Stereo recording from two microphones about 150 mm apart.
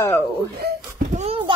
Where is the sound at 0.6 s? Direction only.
90° right.